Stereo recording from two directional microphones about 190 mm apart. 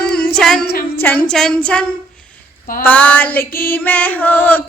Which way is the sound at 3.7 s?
10° left (ahead or behind).